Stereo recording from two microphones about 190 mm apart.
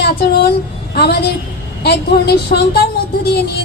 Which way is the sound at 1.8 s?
60° left (ahead or behind).